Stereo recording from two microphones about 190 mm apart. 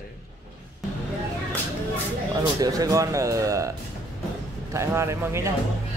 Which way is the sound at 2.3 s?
20° right (ahead or behind).